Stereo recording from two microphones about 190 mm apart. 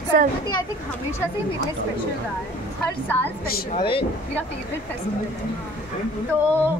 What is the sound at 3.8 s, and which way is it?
Speech, 25° left (ahead or behind).